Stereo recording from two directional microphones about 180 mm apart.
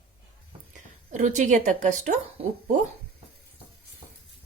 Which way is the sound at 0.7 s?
40° right (ahead or behind).